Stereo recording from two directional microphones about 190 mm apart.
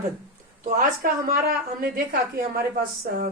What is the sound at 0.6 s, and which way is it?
Speech, 45° right (ahead or behind).